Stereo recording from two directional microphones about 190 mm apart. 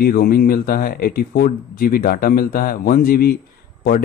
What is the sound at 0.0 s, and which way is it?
Speech, 50° left (ahead or behind).